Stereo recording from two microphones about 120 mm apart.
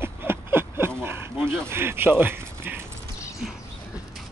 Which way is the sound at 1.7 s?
20° right (ahead or behind).